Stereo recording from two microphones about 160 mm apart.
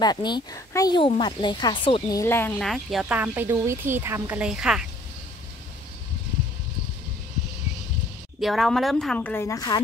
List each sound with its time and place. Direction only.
0.0 s speech: 25° left (ahead or behind)
2.1 s speech: 15° left (ahead or behind)
2.6 s speech: centre (ahead or behind)
8.4 s speech: centre (ahead or behind); by 9.8 s 20° left (ahead or behind)